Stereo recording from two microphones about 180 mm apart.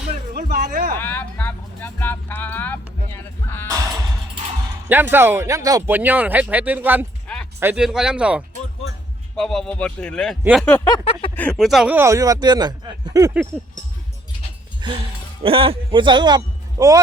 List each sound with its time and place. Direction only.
0.4 s speech: 50° right (ahead or behind)
0.9 s speech: 10° left (ahead or behind)
4.9 s speech: 10° right (ahead or behind)
10.7 s speech: 10° left (ahead or behind)
10.9 s a sound: 30° left (ahead or behind)
11.3 s speech: 5° left (ahead or behind)
11.9 s a man's voice: 15° right (ahead or behind)
13.5 s speech: centre (ahead or behind)
14.8 s a man's voice: 25° right (ahead or behind)